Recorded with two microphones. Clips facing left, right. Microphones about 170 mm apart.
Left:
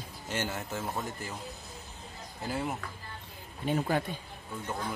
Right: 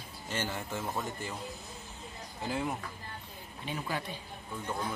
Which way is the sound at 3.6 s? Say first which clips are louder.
Left 8 dB; 50° left (ahead or behind).